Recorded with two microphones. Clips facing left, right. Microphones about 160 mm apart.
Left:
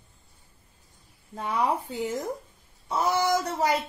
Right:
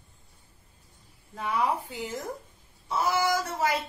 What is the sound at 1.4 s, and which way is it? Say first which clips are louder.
Speech: left 1 dB; 25° left (ahead or behind).